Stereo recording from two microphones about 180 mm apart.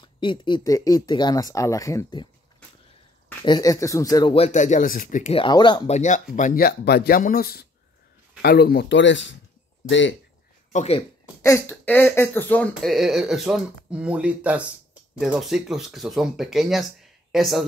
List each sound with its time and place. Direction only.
0.0 s speech: 25° left (ahead or behind)
3.4 s speech: 20° left (ahead or behind)
4.5 s speech: 45° left (ahead or behind)
5.3 s speech: 25° left (ahead or behind)
5.9 s speech: 40° left (ahead or behind); by 10.1 s 90° left
10.7 s speech: 40° left (ahead or behind)
11.4 s speech: 15° left (ahead or behind)